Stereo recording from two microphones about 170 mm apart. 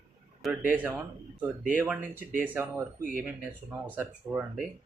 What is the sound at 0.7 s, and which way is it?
Speech, 10° right (ahead or behind).